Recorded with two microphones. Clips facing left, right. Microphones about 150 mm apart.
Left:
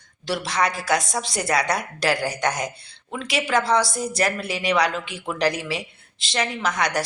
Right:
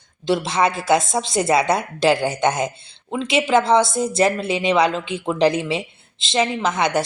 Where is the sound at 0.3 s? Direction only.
25° right (ahead or behind).